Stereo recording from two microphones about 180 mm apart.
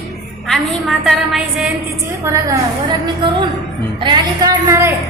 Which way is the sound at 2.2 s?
15° right (ahead or behind).